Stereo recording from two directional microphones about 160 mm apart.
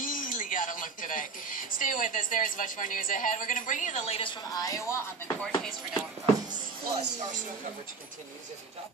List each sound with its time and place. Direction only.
0.0 s speech: 60° left (ahead or behind); by 4.3 s 40° left (ahead or behind)
4.6 s speech: 20° left (ahead or behind)
5.4 s speech: 5° left (ahead or behind)
6.5 s speech: 50° right (ahead or behind)